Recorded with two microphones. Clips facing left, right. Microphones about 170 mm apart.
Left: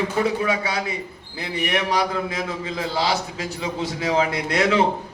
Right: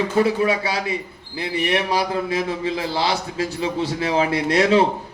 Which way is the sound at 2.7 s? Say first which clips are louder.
Right 1 dB; 30° right (ahead or behind).